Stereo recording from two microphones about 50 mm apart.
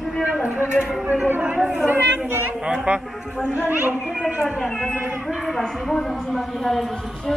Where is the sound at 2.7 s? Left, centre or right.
Right.